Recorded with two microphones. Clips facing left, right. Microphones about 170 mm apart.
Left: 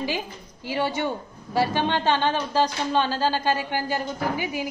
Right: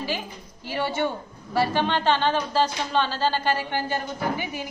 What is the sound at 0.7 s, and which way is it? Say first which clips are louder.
A woman's voice: even; 15° left (ahead or behind).